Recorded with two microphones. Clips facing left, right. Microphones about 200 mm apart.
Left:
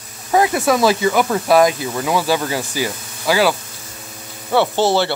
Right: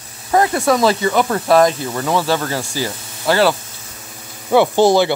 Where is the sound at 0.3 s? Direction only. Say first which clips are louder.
Even; 15° left (ahead or behind).